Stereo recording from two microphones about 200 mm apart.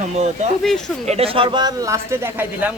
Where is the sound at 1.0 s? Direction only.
30° right (ahead or behind); by 2.7 s 10° right (ahead or behind).